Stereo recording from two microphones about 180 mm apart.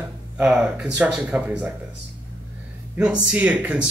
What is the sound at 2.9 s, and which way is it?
Speech, 5° right (ahead or behind).